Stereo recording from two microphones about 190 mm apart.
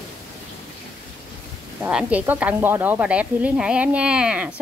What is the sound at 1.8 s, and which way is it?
A woman's voice, 5° right (ahead or behind).